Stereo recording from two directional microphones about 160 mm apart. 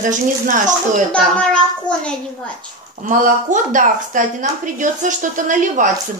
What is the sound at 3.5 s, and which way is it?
Speech, 55° right (ahead or behind).